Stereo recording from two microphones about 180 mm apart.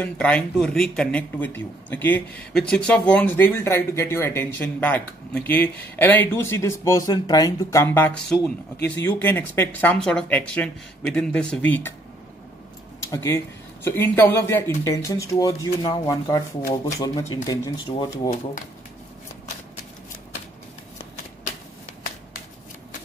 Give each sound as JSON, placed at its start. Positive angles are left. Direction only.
{"t": 0.0, "sound": "speech", "side_deg": 5}
{"t": 13.1, "sound": "speech", "side_deg": 15}